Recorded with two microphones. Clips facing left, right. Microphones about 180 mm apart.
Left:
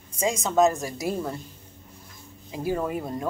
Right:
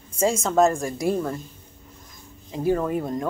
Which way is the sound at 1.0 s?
10° left (ahead or behind).